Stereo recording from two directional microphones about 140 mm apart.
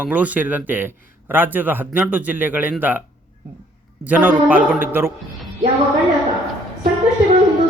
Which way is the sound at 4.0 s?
10° right (ahead or behind).